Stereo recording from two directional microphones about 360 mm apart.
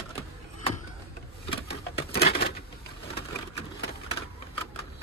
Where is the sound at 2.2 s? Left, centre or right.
Left.